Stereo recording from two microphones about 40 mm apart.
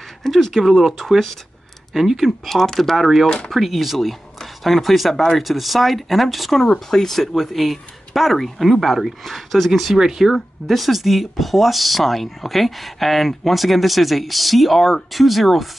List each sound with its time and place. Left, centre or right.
0.2 s speech: centre
5.1 s speech: centre
5.4 s speech: centre
10.3 s speech: centre